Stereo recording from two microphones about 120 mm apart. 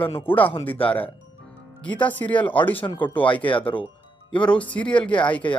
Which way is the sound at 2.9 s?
35° left (ahead or behind).